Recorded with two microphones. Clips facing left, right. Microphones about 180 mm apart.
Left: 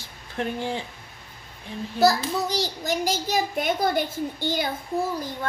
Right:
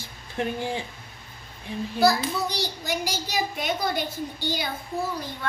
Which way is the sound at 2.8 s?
45° left (ahead or behind).